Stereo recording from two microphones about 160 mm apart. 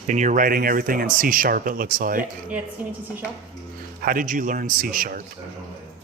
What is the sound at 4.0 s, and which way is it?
Speech, 60° right (ahead or behind).